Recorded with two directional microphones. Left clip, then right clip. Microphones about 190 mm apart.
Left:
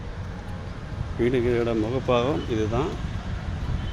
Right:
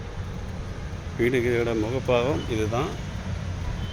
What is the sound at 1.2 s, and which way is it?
Speech, 15° left (ahead or behind).